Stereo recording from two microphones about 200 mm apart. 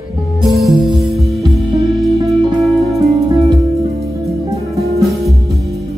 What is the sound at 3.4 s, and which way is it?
Music, 15° right (ahead or behind).